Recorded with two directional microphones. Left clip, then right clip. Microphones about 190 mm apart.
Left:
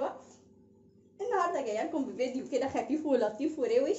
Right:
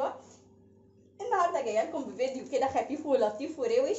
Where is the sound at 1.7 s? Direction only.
55° left (ahead or behind).